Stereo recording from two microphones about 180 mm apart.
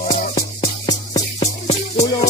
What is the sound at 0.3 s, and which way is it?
Music, 25° left (ahead or behind).